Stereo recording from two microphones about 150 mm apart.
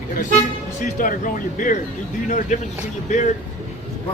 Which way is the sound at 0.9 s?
60° left (ahead or behind).